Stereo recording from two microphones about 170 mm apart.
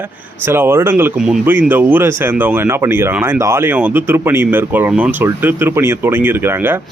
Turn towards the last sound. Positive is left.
turn(degrees=-15)  # may be behind; listen again after turning